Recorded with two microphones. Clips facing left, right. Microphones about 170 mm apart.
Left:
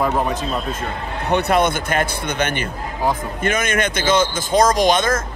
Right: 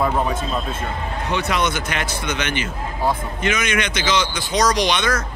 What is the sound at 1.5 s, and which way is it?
Speech, 55° left (ahead or behind).